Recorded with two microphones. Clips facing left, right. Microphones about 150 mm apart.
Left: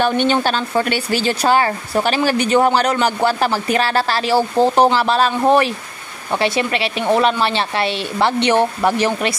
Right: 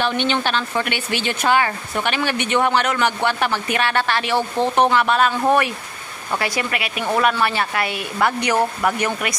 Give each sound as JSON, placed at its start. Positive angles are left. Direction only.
{"t": 0.0, "sound": "a woman's voice", "side_deg": 40}